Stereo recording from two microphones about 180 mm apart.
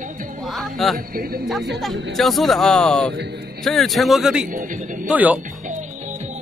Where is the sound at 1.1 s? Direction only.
55° right (ahead or behind).